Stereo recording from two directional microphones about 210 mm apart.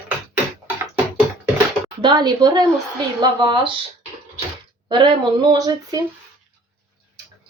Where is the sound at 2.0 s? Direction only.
20° right (ahead or behind).